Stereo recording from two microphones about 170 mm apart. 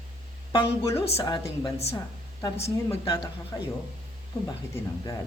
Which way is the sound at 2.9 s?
20° left (ahead or behind).